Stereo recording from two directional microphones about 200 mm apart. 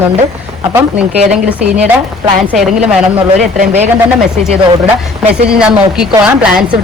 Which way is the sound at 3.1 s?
35° right (ahead or behind).